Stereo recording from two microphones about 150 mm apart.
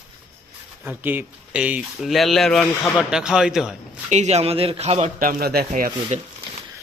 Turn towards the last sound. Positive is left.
turn(degrees=-50)  # may be behind; listen again after turning